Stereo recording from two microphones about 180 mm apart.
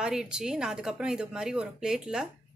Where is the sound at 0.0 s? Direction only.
5° right (ahead or behind).